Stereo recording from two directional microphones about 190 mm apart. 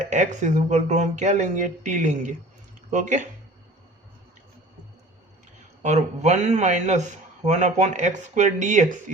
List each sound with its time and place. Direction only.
0.0 s speech: 40° right (ahead or behind)
5.8 s speech: 35° right (ahead or behind)